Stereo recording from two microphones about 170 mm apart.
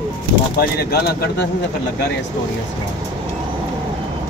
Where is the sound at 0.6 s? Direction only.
70° left (ahead or behind).